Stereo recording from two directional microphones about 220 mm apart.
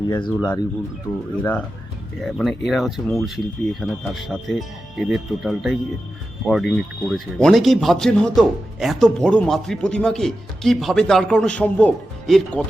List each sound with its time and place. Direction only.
0.1 s speech: 20° left (ahead or behind)
1.4 s speech: 5° left (ahead or behind)